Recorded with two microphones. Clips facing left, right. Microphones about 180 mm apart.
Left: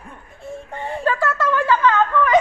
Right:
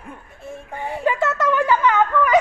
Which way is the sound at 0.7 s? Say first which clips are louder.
Right 1 dB; 10° right (ahead or behind).